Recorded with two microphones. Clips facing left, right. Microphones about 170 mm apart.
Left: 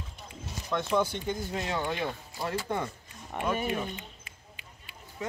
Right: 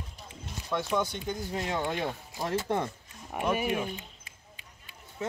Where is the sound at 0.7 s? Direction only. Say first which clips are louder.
Left 2 dB; 5° right (ahead or behind).